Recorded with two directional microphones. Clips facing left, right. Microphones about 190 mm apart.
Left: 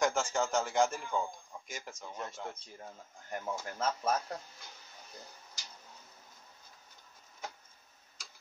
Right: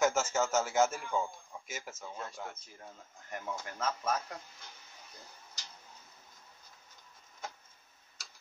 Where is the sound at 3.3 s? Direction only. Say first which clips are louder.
Left 2 dB; 30° left (ahead or behind).